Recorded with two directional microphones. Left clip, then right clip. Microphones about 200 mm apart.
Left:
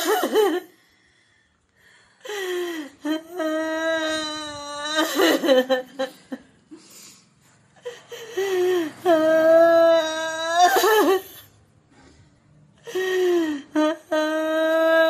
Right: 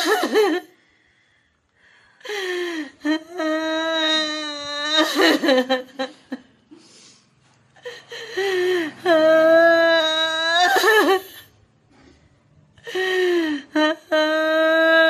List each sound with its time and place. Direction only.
0.0 s a sound: 15° right (ahead or behind)
2.2 s whimper: 15° right (ahead or behind)
7.8 s whimper: 5° right (ahead or behind)
12.8 s humming: 5° right (ahead or behind)